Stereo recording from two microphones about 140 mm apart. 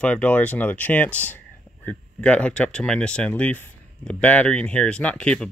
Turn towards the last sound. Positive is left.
turn(degrees=5)  # may be behind; listen again after turning